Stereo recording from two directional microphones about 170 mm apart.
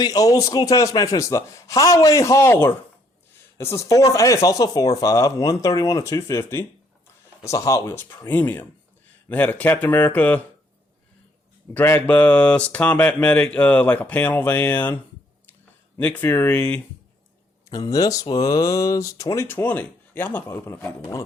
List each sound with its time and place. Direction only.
0.0 s speech: 20° left (ahead or behind)
11.7 s speech: 10° left (ahead or behind)
16.0 s speech: 10° left (ahead or behind)
17.7 s speech: 20° left (ahead or behind)